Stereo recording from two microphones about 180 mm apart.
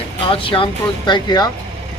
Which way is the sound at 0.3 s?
30° left (ahead or behind).